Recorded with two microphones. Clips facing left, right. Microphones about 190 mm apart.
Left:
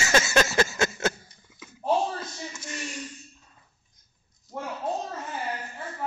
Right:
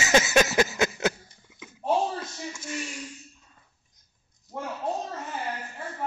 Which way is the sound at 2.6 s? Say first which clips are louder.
Right 1 dB; 5° right (ahead or behind).